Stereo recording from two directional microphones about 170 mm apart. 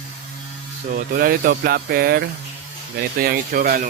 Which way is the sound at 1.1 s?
60° right (ahead or behind).